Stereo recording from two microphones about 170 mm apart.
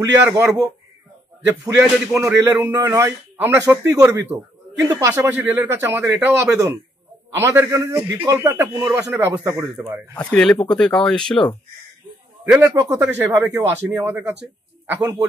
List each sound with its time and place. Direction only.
0.0 s a man's voice: 15° right (ahead or behind)
1.8 s a man's voice: 15° right (ahead or behind)
10.1 s speech: 5° left (ahead or behind)
12.5 s a man's voice: 15° right (ahead or behind)